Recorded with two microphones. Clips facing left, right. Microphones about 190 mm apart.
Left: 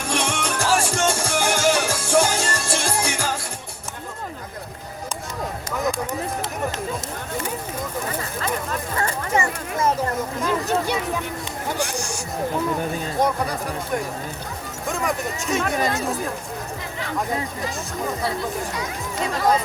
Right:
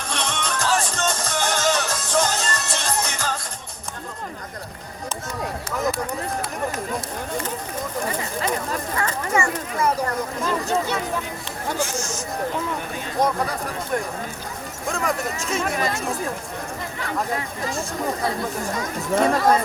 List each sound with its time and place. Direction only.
0.1 s music: 10° left (ahead or behind)
9.0 s a sound: 25° left (ahead or behind)
10.4 s a sound: 15° left (ahead or behind)
11.8 s speech: 15° left (ahead or behind)
13.1 s speech: centre (ahead or behind)
14.8 s speech: centre (ahead or behind)
18.7 s speech: 50° right (ahead or behind)